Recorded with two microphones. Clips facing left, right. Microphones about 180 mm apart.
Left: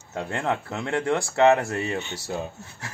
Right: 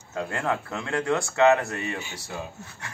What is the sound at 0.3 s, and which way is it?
Speech, 25° left (ahead or behind).